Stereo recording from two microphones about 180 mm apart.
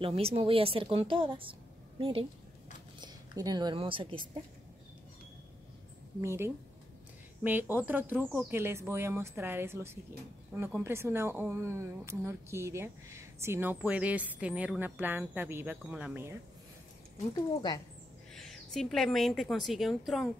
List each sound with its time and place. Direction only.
0.0 s a woman's voice: 30° right (ahead or behind)
6.2 s speech: 15° right (ahead or behind)
18.3 s a woman's voice: centre (ahead or behind)